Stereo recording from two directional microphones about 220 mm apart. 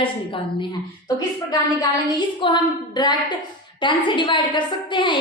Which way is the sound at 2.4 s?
20° left (ahead or behind).